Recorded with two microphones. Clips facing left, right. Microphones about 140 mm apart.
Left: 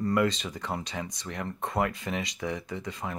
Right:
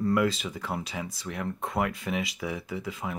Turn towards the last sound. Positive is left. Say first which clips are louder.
# right 1 dB
turn(degrees=-5)  # may be behind; listen again after turning